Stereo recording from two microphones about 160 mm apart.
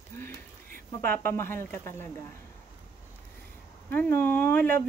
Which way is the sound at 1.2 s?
15° left (ahead or behind).